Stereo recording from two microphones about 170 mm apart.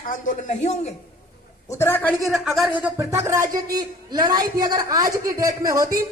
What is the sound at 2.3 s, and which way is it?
A woman's voice, centre (ahead or behind).